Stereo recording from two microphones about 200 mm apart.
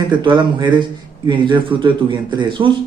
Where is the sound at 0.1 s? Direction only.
25° right (ahead or behind).